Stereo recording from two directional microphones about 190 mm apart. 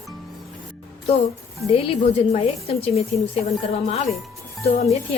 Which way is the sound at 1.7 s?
30° left (ahead or behind).